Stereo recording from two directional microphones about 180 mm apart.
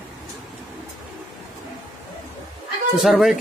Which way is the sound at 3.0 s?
Centre (ahead or behind).